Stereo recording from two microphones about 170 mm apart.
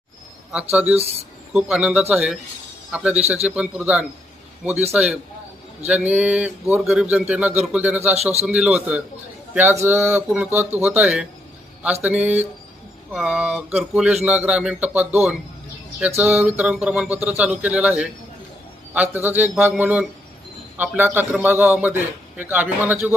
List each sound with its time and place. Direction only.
0.5 s speech: 10° right (ahead or behind)
8.1 s a man's voice: 40° right (ahead or behind)
8.4 s speech: 5° right (ahead or behind)